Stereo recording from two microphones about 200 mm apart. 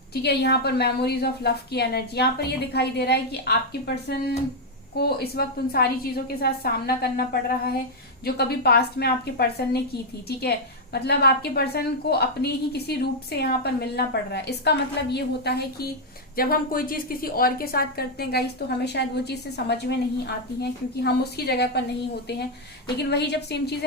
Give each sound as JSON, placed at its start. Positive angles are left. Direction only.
{"t": 0.1, "sound": "a woman's voice", "side_deg": 55}
{"t": 23.0, "sound": "a woman's voice", "side_deg": 55}